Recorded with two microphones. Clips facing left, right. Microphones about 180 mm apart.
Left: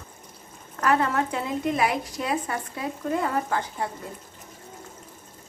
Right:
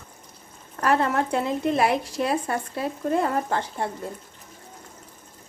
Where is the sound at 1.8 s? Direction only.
30° right (ahead or behind).